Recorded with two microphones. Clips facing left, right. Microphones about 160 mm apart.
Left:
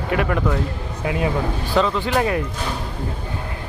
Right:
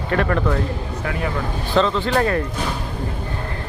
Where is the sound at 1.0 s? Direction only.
20° left (ahead or behind).